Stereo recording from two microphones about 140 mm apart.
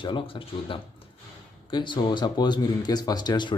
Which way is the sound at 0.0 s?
35° left (ahead or behind).